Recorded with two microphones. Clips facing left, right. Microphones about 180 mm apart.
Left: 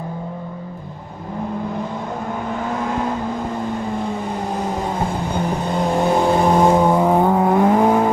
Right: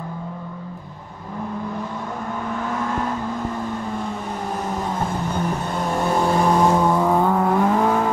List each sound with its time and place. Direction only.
4.8 s vehicle: 10° left (ahead or behind)